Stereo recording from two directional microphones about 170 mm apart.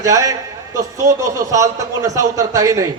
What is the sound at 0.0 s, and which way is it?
A man's voice, 20° right (ahead or behind).